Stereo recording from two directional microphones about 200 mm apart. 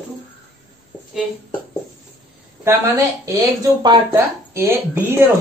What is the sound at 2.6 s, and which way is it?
Speech, 15° right (ahead or behind).